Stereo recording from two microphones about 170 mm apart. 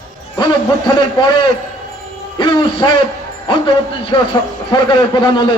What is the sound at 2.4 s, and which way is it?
A man's voice, 30° left (ahead or behind).